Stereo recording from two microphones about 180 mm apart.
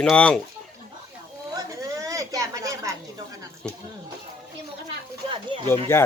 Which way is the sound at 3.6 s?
5° left (ahead or behind).